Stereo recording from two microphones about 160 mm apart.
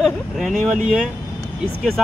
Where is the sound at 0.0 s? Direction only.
Centre (ahead or behind).